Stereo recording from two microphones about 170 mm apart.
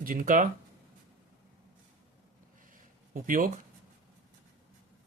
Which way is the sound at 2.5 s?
55° right (ahead or behind).